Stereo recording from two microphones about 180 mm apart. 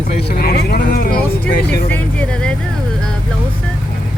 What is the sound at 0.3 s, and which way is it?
Vehicle, 60° left (ahead or behind).